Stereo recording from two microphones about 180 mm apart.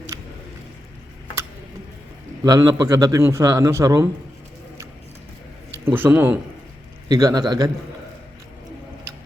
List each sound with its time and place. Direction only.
0.1 s a sound: 20° right (ahead or behind)
2.4 s a man's voice: 20° right (ahead or behind)
5.8 s a man's voice: 10° right (ahead or behind)